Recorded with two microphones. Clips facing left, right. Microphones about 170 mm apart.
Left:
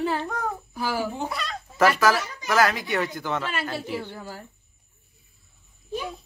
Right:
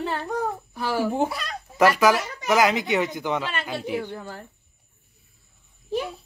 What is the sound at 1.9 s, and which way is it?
A woman's voice, 15° right (ahead or behind).